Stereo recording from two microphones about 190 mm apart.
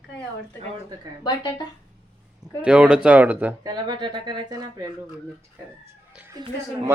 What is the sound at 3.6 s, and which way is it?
Speech, 20° right (ahead or behind).